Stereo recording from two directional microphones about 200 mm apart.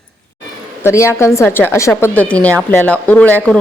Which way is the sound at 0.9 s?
15° left (ahead or behind).